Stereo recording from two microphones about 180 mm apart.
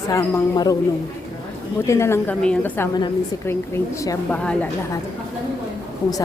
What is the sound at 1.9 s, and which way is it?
A woman's voice, 15° left (ahead or behind).